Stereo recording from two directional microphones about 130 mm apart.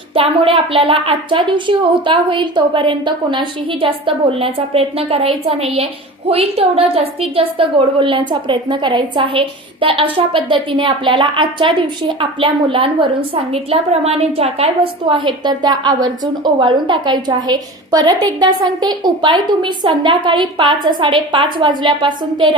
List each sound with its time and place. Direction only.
0.1 s a woman's voice: 45° right (ahead or behind)
15.1 s a woman's voice: 40° right (ahead or behind)